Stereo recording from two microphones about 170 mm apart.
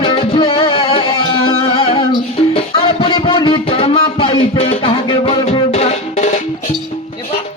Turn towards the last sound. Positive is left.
turn(degrees=45)  # may be behind; listen again after turning